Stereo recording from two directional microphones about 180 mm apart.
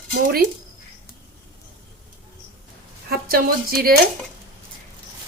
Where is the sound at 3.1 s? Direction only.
55° right (ahead or behind).